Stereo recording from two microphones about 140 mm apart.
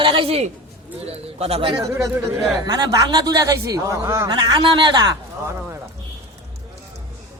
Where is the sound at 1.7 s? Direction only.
25° right (ahead or behind).